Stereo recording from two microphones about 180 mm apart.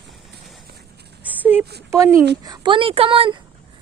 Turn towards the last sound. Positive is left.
turn(degrees=-30)  # may be behind; listen again after turning